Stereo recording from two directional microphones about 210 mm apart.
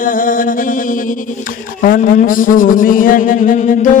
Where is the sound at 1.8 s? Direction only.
40° left (ahead or behind).